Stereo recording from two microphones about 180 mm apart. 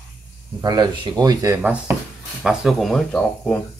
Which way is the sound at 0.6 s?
25° right (ahead or behind).